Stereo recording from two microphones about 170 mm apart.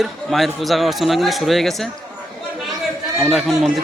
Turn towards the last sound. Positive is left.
turn(degrees=0)  # may be behind; listen again after turning